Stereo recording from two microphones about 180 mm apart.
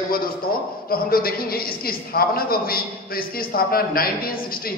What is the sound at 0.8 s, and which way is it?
A man's voice, 55° left (ahead or behind).